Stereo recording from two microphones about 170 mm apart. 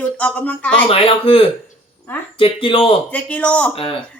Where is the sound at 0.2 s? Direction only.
10° left (ahead or behind).